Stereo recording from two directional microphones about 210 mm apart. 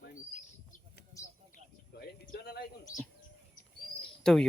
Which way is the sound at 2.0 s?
50° left (ahead or behind).